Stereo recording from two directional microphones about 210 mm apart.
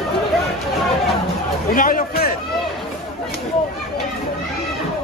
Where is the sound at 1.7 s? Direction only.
40° left (ahead or behind).